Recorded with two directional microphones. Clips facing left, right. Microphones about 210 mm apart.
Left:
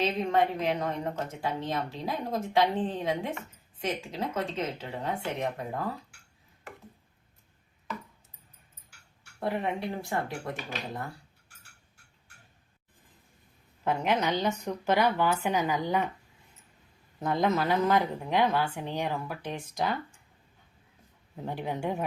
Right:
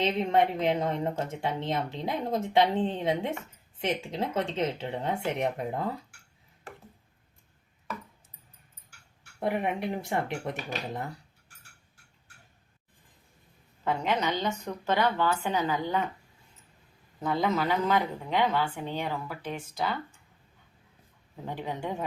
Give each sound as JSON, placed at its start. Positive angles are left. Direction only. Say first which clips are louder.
{"t": 0.0, "sound": "speech", "louder": "right 1 dB", "side_deg": -25}
{"t": 9.4, "sound": "speech", "louder": "right 2 dB", "side_deg": -15}
{"t": 13.8, "sound": "a woman's voice", "louder": "left 1 dB", "side_deg": 10}
{"t": 17.2, "sound": "a woman's voice", "louder": "left 1 dB", "side_deg": 10}
{"t": 21.4, "sound": "a woman's voice", "louder": "left 2 dB", "side_deg": 15}